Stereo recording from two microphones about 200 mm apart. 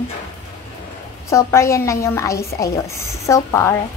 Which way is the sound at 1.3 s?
15° left (ahead or behind).